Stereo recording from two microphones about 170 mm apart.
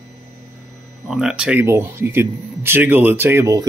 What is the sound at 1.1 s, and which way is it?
Speech, 5° right (ahead or behind).